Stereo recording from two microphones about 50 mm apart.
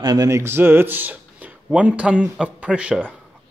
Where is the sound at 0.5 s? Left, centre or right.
Right.